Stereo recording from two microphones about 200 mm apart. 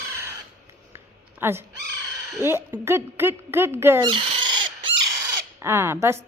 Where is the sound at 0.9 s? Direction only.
10° right (ahead or behind).